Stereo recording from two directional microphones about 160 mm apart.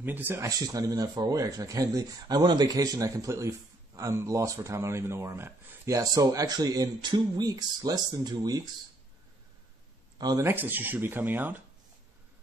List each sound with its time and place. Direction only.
0.0 s speech: 10° right (ahead or behind)
10.1 s speech: 25° right (ahead or behind)